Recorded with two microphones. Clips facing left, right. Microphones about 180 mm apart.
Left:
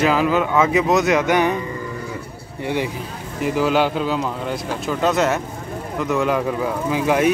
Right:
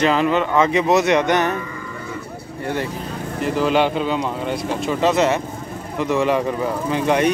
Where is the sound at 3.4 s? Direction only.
5° left (ahead or behind).